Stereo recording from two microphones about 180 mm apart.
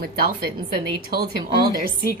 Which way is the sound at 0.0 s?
55° right (ahead or behind).